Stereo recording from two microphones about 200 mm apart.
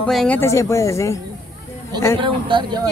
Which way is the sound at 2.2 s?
25° right (ahead or behind).